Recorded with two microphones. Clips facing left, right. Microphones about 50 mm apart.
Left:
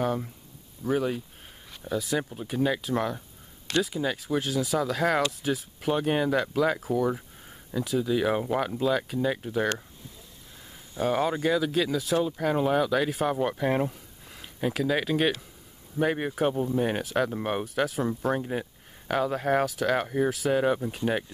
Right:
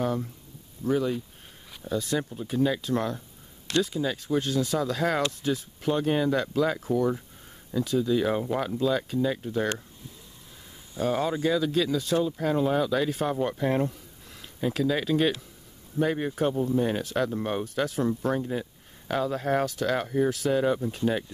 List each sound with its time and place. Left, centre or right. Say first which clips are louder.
0.0 s speech: even; centre
11.0 s speech: left 1 dB; centre
17.0 s speech: even; centre